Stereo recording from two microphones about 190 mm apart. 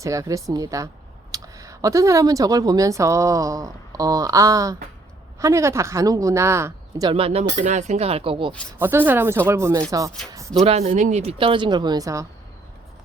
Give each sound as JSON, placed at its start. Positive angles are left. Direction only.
{"t": 0.0, "sound": "speech", "side_deg": -15}
{"t": 7.1, "sound": "speech", "side_deg": -30}
{"t": 8.8, "sound": "speech", "side_deg": -10}
{"t": 10.6, "sound": "speech", "side_deg": -35}